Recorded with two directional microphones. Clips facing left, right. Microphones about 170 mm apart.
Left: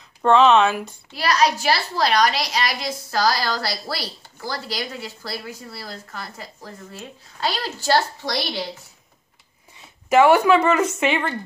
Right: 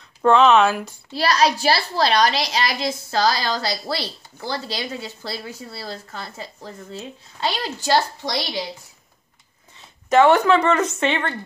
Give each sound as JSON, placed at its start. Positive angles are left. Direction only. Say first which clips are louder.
{"t": 0.2, "sound": "speech", "louder": "even", "side_deg": 0}
{"t": 1.1, "sound": "a child's voice", "louder": "right 1 dB", "side_deg": -30}
{"t": 10.0, "sound": "speech", "louder": "even", "side_deg": 10}